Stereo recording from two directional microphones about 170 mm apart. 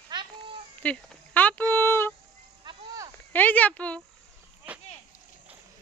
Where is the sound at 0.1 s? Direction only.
25° right (ahead or behind).